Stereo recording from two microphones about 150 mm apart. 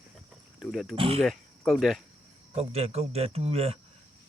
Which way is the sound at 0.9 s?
40° right (ahead or behind).